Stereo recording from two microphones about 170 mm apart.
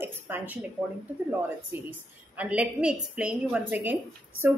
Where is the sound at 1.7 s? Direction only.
10° right (ahead or behind).